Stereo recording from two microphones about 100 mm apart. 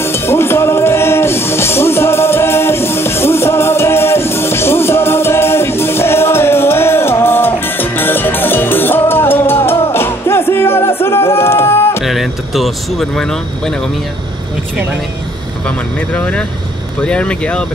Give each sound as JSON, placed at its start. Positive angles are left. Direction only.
{"t": 0.0, "sound": "music", "side_deg": 25}
{"t": 12.0, "sound": "speech", "side_deg": 0}
{"t": 16.2, "sound": "speech", "side_deg": 10}